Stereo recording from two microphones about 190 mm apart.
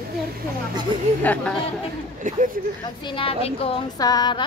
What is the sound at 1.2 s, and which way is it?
Speech, 10° left (ahead or behind).